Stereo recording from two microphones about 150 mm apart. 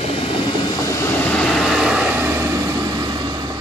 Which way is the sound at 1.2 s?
5° left (ahead or behind).